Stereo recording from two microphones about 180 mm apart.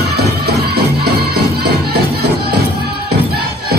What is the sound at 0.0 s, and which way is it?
Music, 65° right (ahead or behind).